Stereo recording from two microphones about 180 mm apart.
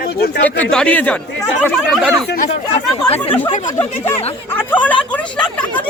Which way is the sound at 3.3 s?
10° left (ahead or behind).